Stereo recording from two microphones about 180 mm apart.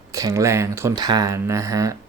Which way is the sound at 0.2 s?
20° right (ahead or behind).